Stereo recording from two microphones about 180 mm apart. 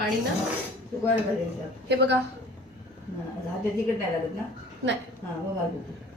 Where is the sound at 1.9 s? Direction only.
70° right (ahead or behind).